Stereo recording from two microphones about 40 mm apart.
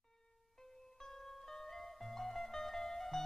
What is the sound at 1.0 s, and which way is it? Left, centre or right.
Music, centre.